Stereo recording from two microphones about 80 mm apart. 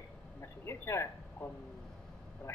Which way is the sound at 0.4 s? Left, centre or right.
Left.